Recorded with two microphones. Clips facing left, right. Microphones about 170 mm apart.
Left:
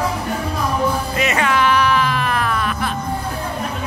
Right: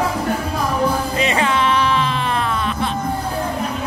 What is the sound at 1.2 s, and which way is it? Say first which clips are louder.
Music: left 1 dB; 30° right (ahead or behind).